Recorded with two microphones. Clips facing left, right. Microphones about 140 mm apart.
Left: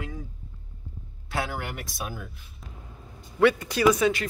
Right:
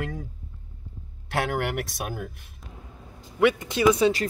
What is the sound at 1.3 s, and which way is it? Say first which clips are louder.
Speech: right 5 dB; 70° right (ahead or behind).